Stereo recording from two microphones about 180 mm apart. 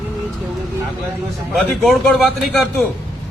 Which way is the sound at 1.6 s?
Centre (ahead or behind).